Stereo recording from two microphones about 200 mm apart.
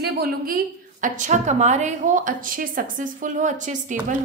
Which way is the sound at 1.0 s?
40° right (ahead or behind).